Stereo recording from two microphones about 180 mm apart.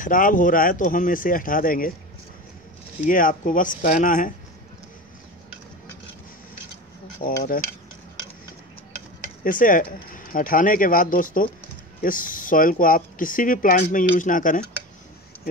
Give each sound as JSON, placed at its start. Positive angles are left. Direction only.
{"t": 0.0, "sound": "speech", "side_deg": 50}
{"t": 3.1, "sound": "speech", "side_deg": 50}
{"t": 9.4, "sound": "speech", "side_deg": 50}